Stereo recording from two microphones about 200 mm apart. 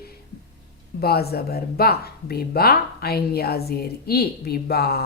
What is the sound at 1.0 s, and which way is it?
Speech, 50° left (ahead or behind).